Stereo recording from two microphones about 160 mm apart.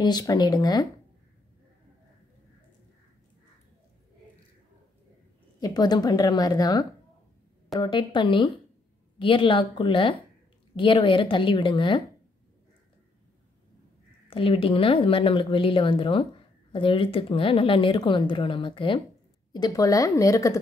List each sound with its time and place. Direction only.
0.0 s a woman's voice: 25° left (ahead or behind)
5.6 s a woman's voice: 25° left (ahead or behind)
14.3 s a woman's voice: 35° left (ahead or behind)